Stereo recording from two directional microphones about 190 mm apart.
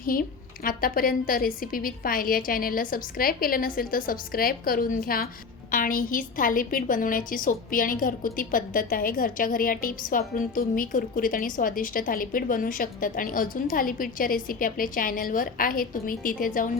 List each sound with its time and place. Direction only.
0.0 s a woman's voice: 50° left (ahead or behind)